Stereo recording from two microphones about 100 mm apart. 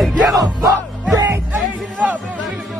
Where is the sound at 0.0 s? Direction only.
Centre (ahead or behind).